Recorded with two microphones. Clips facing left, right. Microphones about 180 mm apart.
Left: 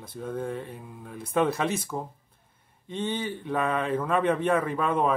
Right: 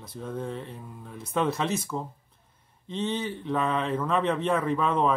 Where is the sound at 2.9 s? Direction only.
55° left (ahead or behind).